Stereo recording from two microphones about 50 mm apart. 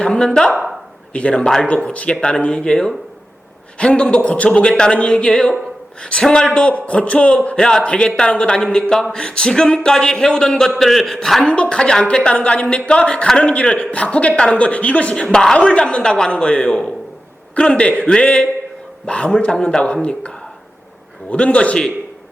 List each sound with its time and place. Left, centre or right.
0.0 s a woman's voice: centre
1.1 s a man's voice: left
1.6 s a man's voice: left; by 11.4 s centre
11.4 s a man's voice: left
15.2 s a man's voice: centre